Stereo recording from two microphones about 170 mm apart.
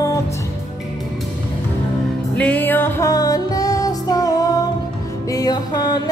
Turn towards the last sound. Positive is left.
turn(degrees=25)  # may be behind; listen again after turning